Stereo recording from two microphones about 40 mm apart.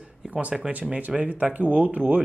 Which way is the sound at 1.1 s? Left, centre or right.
Right.